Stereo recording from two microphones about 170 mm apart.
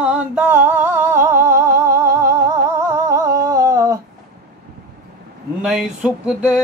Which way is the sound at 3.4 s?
20° right (ahead or behind).